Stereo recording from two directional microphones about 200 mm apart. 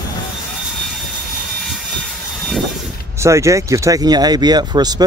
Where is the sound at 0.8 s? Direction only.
Centre (ahead or behind).